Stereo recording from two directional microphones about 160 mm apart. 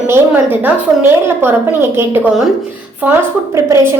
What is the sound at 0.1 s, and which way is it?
Speech, 15° right (ahead or behind).